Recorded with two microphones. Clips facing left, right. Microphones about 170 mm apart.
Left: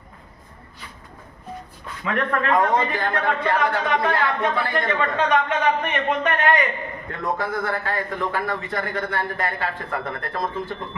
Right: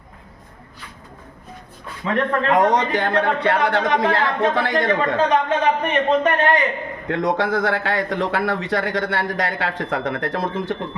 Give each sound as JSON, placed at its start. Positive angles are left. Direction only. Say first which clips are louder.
{"t": 2.0, "sound": "speech", "louder": "right 3 dB", "side_deg": -30}
{"t": 2.5, "sound": "a man's voice", "louder": "right 3 dB", "side_deg": -85}
{"t": 4.1, "sound": "speech", "louder": "right 3 dB", "side_deg": -25}
{"t": 4.6, "sound": "a man's voice", "louder": "right 4 dB", "side_deg": -85}
{"t": 4.9, "sound": "a man's voice", "louder": "right 1 dB", "side_deg": -30}
{"t": 7.1, "sound": "a man's voice", "louder": "right 7 dB", "side_deg": -90}